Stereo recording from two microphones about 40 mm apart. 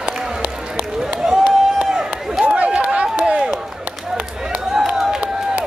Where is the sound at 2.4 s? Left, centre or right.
Right.